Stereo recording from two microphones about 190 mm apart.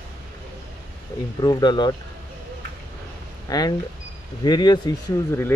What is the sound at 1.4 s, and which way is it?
Speech, 20° left (ahead or behind).